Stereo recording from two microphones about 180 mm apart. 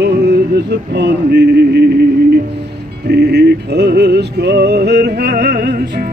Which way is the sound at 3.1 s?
65° right (ahead or behind).